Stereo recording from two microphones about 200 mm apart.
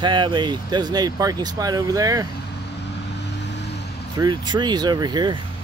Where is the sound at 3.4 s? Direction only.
60° left (ahead or behind).